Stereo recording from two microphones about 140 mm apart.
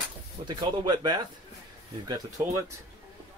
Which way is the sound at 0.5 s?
30° right (ahead or behind).